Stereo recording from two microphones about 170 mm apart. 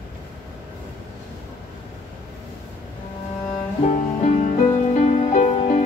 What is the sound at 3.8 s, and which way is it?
Music, 40° left (ahead or behind).